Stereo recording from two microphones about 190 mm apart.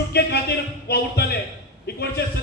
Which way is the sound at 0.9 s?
55° left (ahead or behind).